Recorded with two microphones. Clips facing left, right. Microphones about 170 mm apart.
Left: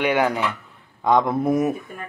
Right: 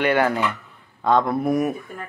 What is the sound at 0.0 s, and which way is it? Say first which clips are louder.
Speech: right 1 dB; 10° left (ahead or behind).